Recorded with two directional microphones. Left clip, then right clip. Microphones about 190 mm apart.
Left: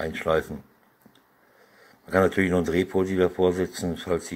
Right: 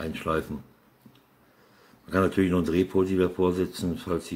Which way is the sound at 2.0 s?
15° left (ahead or behind).